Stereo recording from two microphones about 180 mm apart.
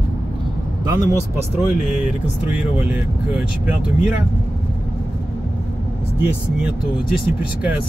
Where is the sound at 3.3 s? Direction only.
5° right (ahead or behind).